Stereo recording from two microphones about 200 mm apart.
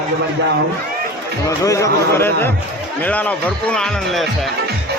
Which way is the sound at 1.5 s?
15° left (ahead or behind).